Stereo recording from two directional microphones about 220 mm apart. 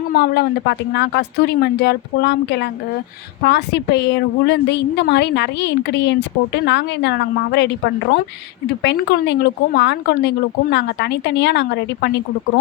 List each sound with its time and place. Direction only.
0.1 s a woman's voice: 45° left (ahead or behind)